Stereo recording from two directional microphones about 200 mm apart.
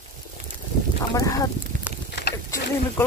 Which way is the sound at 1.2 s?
15° left (ahead or behind).